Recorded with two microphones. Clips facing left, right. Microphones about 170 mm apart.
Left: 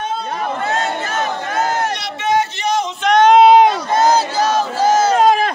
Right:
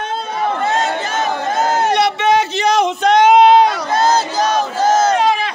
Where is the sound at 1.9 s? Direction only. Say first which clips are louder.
Right 6 dB; 65° right (ahead or behind); by 2.9 s 80° right.